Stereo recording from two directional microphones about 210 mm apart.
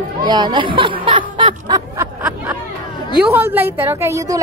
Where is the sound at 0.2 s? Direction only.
20° right (ahead or behind).